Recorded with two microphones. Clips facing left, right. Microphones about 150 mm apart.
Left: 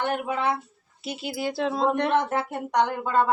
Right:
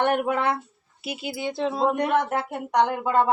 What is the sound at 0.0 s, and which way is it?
Speech, 60° right (ahead or behind).